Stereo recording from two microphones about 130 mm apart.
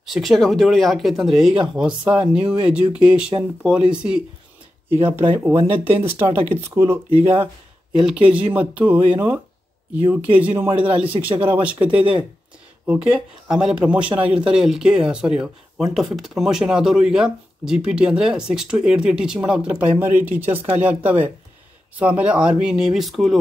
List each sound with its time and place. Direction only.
0.0 s speech: centre (ahead or behind)
5.0 s speech: 20° right (ahead or behind); by 23.4 s centre (ahead or behind)